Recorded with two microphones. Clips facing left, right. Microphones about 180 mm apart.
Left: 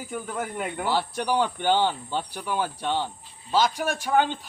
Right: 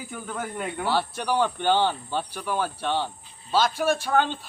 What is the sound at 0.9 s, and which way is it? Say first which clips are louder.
A man's voice: even; 15° left (ahead or behind).